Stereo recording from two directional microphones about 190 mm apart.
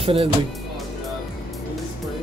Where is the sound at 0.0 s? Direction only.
30° right (ahead or behind).